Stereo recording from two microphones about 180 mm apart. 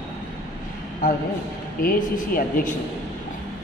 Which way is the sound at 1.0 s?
45° left (ahead or behind).